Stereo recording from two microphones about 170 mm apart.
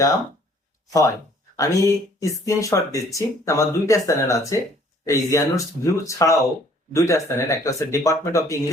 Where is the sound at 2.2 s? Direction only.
20° left (ahead or behind).